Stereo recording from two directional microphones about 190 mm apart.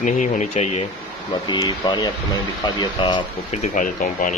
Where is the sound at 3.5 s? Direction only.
40° left (ahead or behind).